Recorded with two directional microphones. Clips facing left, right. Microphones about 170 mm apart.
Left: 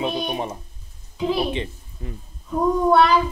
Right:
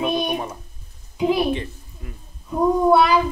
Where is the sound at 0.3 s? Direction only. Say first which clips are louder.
Right 1 dB; 25° left (ahead or behind).